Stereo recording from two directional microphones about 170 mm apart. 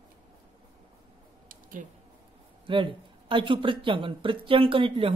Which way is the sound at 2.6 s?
30° right (ahead or behind).